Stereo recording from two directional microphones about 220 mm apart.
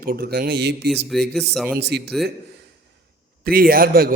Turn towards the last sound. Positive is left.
turn(degrees=-40)  # may be behind; listen again after turning